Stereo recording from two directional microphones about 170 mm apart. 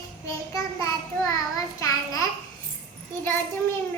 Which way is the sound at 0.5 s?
15° left (ahead or behind).